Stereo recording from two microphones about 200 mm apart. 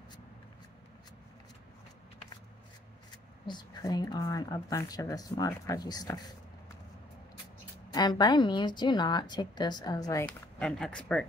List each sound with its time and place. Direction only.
3.4 s a woman's voice: 20° left (ahead or behind)
7.9 s a woman's voice: 20° left (ahead or behind)
10.2 s speech: 5° left (ahead or behind)